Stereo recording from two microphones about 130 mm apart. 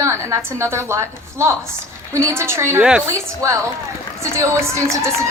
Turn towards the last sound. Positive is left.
turn(degrees=-20)  # may be behind; listen again after turning